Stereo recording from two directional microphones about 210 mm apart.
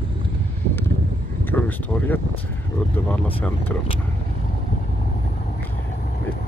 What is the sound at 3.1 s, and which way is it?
Speech, 5° left (ahead or behind).